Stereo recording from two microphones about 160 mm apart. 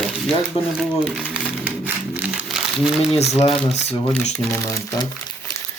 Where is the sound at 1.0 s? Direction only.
5° right (ahead or behind).